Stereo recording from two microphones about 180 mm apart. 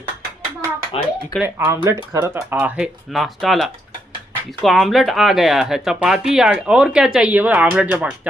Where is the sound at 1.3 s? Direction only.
10° right (ahead or behind).